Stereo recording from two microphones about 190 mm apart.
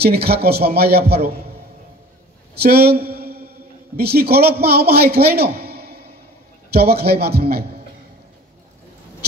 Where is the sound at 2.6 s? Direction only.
55° right (ahead or behind).